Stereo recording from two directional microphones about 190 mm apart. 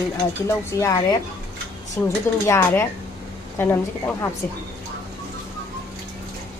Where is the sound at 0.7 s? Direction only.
20° left (ahead or behind).